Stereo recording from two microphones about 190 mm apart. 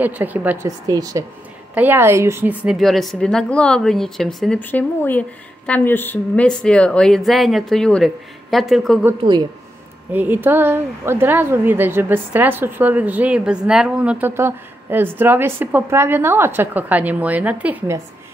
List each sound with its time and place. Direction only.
0.0 s a woman's voice: 10° right (ahead or behind)
10.1 s speech: 10° right (ahead or behind)